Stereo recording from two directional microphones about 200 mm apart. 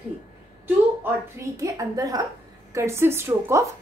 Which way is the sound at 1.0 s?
15° right (ahead or behind).